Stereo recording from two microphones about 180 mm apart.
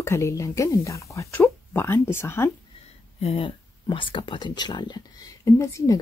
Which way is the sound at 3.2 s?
30° left (ahead or behind).